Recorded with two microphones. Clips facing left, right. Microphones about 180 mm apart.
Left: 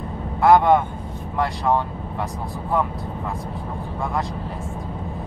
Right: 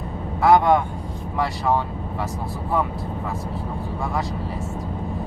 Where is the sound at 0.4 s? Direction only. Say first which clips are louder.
Left 1 dB; centre (ahead or behind).